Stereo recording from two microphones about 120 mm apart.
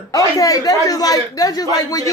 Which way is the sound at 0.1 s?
30° left (ahead or behind).